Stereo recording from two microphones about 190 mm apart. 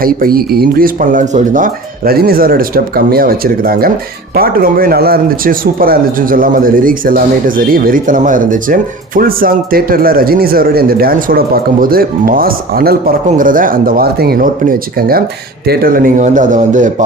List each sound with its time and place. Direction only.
0.0 s speech: 50° right (ahead or behind)